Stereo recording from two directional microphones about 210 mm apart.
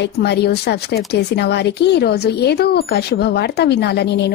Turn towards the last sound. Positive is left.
turn(degrees=50)  # may be behind; listen again after turning